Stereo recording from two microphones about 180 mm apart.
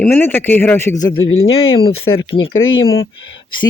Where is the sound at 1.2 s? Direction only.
90° left.